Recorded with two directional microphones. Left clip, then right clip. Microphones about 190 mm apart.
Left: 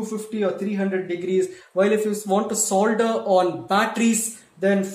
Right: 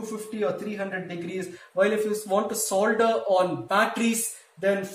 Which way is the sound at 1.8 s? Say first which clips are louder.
Left 3 dB; 45° left (ahead or behind).